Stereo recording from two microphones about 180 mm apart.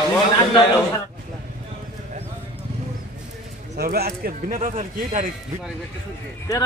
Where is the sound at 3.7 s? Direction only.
60° right (ahead or behind).